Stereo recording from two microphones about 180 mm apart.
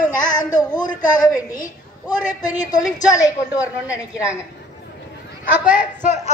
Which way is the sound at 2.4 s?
20° left (ahead or behind).